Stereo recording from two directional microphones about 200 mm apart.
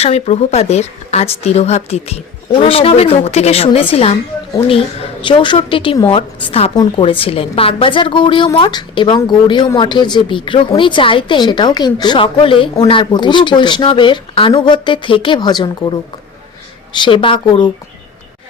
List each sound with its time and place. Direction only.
0.0 s speech: 30° left (ahead or behind)
5.2 s a woman's voice: 25° left (ahead or behind)
16.9 s a woman's voice: 25° left (ahead or behind)